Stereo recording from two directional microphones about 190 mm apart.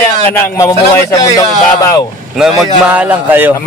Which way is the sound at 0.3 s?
15° left (ahead or behind).